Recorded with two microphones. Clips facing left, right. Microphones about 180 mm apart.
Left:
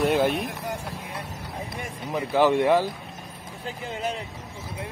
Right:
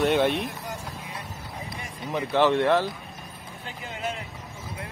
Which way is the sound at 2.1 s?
10° left (ahead or behind).